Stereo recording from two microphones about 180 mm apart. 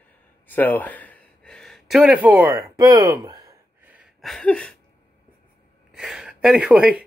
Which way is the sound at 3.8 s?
5° right (ahead or behind).